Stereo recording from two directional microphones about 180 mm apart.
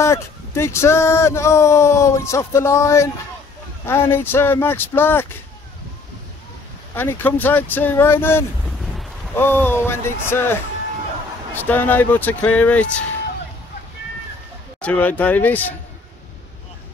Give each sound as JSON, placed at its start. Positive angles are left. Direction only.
{"t": 0.0, "sound": "speech", "side_deg": 15}
{"t": 7.0, "sound": "speech", "side_deg": 10}
{"t": 14.8, "sound": "speech", "side_deg": 10}